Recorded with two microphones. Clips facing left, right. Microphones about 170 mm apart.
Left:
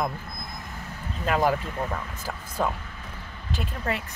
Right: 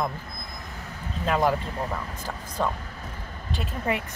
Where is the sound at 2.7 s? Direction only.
40° right (ahead or behind).